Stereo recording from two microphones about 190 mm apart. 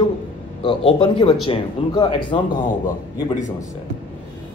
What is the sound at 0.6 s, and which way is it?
Speech, 25° left (ahead or behind).